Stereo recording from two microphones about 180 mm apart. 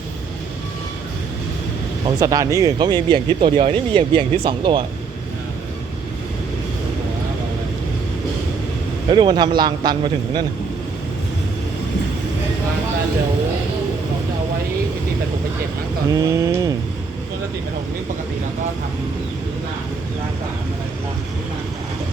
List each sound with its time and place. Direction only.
2.0 s speech: 20° right (ahead or behind)
9.0 s speech: 25° right (ahead or behind)
16.1 s speech: 15° right (ahead or behind)